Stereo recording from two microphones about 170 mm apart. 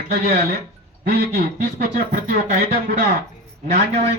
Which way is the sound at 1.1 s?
60° right (ahead or behind).